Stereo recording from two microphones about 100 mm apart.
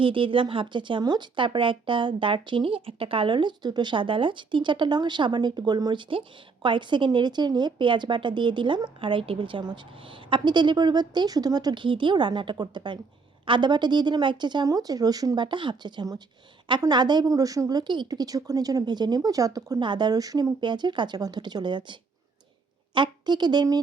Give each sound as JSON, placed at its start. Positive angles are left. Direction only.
{"t": 0.0, "sound": "speech", "side_deg": -60}
{"t": 17.2, "sound": "speech", "side_deg": -35}
{"t": 19.8, "sound": "speech", "side_deg": -50}
{"t": 23.0, "sound": "speech", "side_deg": -50}